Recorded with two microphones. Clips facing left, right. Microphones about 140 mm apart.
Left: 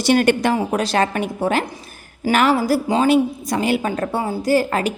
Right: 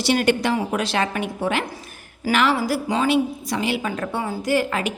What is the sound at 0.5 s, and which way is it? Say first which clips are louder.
A woman's voice: left 3 dB; 40° left (ahead or behind).